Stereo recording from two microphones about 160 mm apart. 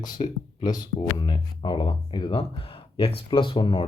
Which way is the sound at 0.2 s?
25° left (ahead or behind).